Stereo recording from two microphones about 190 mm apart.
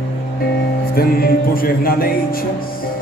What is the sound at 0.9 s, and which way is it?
Music, 50° left (ahead or behind).